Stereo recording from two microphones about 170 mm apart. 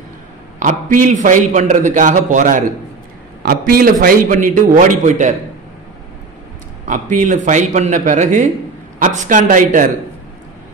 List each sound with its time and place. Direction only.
0.6 s a man's voice: 50° right (ahead or behind)
6.9 s a man's voice: 50° right (ahead or behind)